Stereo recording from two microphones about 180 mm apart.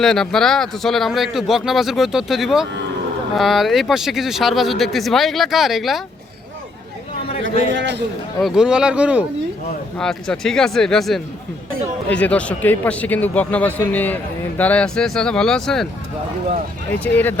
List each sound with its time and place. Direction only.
0.0 s a man's voice: centre (ahead or behind)
7.7 s a man's voice: 90° right
8.4 s a man's voice: centre (ahead or behind)
17.0 s speech: 10° left (ahead or behind)